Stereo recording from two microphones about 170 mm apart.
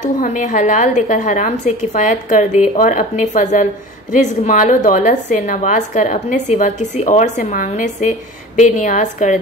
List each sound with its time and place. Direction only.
0.2 s a woman's voice: 50° left (ahead or behind)